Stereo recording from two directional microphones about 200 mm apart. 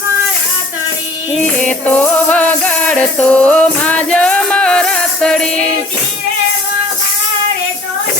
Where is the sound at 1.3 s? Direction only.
5° left (ahead or behind).